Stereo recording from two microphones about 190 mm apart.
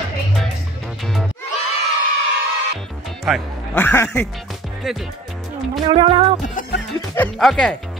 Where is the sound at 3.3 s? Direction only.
5° right (ahead or behind).